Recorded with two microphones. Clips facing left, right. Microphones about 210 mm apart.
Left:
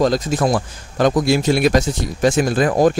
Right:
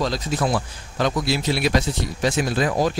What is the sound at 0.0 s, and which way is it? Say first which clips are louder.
Speech: left 6 dB; 45° left (ahead or behind).